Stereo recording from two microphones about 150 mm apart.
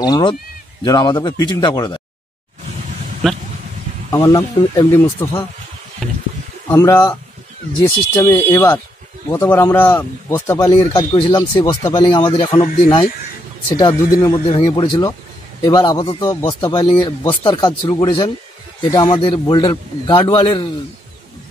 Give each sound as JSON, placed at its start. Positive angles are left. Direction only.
{"t": 0.0, "sound": "speech", "side_deg": 30}
{"t": 4.1, "sound": "speech", "side_deg": 20}
{"t": 6.7, "sound": "speech", "side_deg": 20}
{"t": 10.9, "sound": "speech", "side_deg": 30}
{"t": 14.3, "sound": "speech", "side_deg": 40}
{"t": 14.7, "sound": "speech", "side_deg": 25}
{"t": 16.7, "sound": "speech", "side_deg": 30}